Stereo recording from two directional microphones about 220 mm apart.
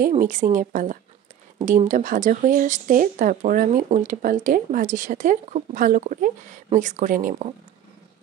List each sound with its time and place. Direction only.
0.1 s speech: 35° right (ahead or behind)